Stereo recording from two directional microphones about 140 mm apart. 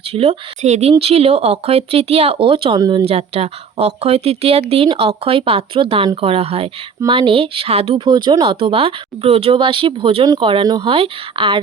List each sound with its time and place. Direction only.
0.0 s speech: 45° right (ahead or behind)
3.1 s speech: 50° right (ahead or behind); by 10.9 s 30° right (ahead or behind)
10.9 s speech: 40° right (ahead or behind)